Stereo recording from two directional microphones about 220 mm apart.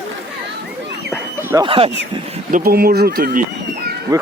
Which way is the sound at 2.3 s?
35° right (ahead or behind).